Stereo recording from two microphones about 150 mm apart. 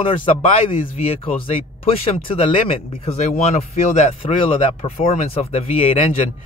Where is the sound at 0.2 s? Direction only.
35° left (ahead or behind).